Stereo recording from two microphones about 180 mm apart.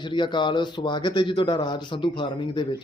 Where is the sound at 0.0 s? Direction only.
25° left (ahead or behind).